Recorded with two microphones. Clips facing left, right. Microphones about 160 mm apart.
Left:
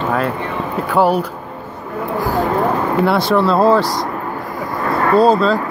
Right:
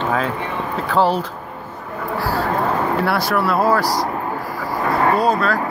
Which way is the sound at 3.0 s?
25° left (ahead or behind).